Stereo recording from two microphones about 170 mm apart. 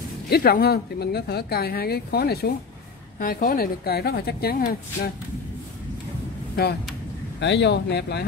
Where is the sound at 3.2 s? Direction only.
55° left (ahead or behind).